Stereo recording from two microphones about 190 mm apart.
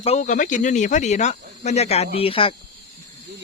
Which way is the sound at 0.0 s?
35° left (ahead or behind).